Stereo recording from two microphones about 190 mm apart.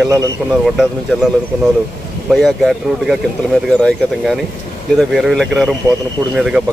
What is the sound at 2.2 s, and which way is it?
Speech, centre (ahead or behind).